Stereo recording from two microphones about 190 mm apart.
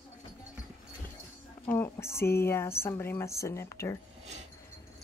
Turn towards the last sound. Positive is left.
turn(degrees=15)  # may be behind; listen again after turning